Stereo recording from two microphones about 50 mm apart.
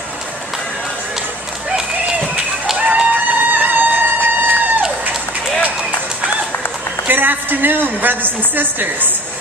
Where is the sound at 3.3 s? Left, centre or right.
Right.